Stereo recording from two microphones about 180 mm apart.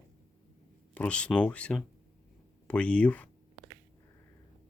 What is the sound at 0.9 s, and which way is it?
Speech, 5° left (ahead or behind).